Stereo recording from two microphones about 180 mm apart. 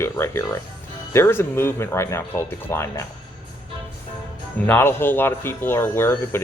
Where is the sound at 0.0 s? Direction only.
15° left (ahead or behind).